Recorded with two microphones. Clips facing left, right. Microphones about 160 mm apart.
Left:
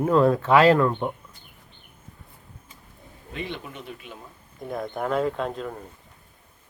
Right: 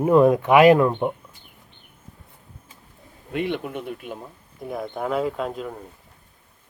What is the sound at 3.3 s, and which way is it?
Speech, 60° right (ahead or behind).